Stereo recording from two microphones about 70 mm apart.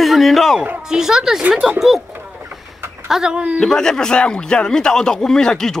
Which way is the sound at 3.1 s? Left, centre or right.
Centre.